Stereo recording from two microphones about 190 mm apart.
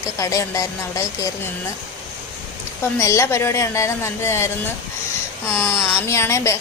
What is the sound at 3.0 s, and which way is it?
A woman's voice, 15° left (ahead or behind).